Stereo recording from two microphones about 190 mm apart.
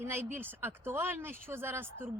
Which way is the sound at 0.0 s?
10° right (ahead or behind).